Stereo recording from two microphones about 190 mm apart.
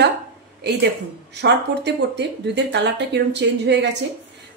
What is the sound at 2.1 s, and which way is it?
Speech, 65° right (ahead or behind).